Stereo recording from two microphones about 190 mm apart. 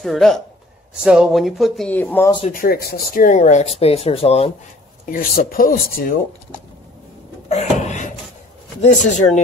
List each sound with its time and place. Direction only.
0.0 s speech: centre (ahead or behind)
2.5 s speech: 50° left (ahead or behind); by 4.5 s 30° left (ahead or behind)
5.0 s speech: 50° left (ahead or behind)
7.4 s speech: 35° left (ahead or behind)